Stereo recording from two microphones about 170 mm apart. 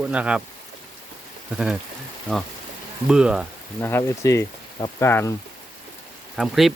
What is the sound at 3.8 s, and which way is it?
Speech, 15° left (ahead or behind).